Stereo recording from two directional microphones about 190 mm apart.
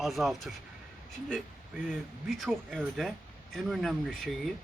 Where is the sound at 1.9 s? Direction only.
Centre (ahead or behind).